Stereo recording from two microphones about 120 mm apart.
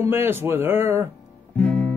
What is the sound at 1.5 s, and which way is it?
Music, 10° left (ahead or behind).